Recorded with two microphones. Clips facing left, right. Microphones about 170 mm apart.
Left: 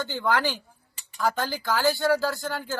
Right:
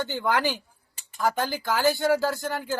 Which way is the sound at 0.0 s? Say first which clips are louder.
Even; 20° right (ahead or behind).